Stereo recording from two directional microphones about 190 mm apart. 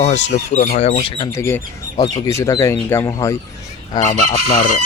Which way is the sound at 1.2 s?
15° left (ahead or behind).